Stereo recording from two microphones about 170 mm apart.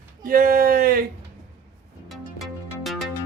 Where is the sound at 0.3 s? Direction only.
55° right (ahead or behind).